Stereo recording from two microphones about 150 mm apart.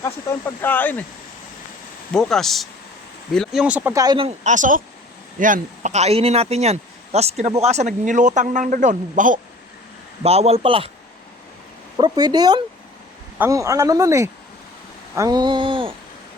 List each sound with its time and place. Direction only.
0.0 s speech: 15° left (ahead or behind)
2.1 s speech: 5° left (ahead or behind)
3.9 s speech: 25° right (ahead or behind)
4.4 s speech: 55° right (ahead or behind)
10.2 s a man's voice: 45° right (ahead or behind)
11.9 s speech: 30° right (ahead or behind)
15.1 s a sound: 25° right (ahead or behind)